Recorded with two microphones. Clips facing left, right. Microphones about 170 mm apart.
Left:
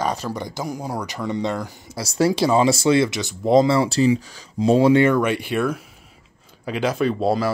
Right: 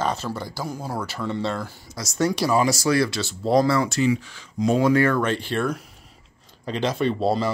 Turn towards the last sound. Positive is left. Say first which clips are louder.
# left 2 dB
turn(degrees=5)  # may be behind; listen again after turning